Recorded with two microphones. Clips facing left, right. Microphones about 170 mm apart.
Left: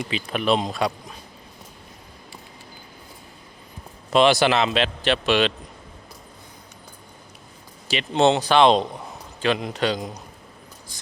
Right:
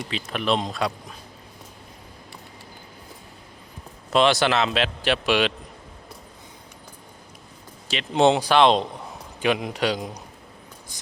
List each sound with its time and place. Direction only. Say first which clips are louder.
0.3 s a man's voice: left 2 dB; 5° left (ahead or behind)
4.1 s a man's voice: left 2 dB; centre (ahead or behind)
8.1 s speech: even; 10° right (ahead or behind)